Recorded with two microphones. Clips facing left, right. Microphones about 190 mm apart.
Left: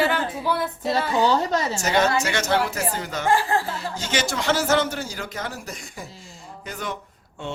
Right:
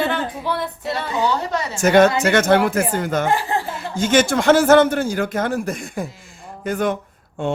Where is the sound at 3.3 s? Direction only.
20° right (ahead or behind).